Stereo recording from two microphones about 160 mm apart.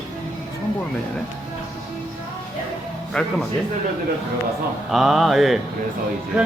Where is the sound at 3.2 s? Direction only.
5° left (ahead or behind).